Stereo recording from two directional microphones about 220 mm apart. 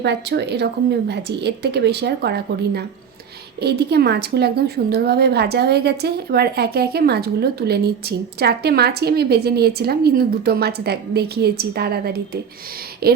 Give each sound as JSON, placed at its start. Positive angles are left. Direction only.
{"t": 0.0, "sound": "a woman's voice", "side_deg": -50}